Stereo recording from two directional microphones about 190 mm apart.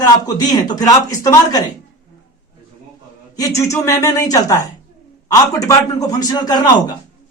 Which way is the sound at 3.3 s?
15° left (ahead or behind).